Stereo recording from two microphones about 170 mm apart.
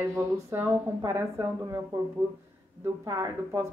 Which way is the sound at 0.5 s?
15° right (ahead or behind).